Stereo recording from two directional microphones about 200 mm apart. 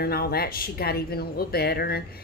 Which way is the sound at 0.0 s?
50° left (ahead or behind).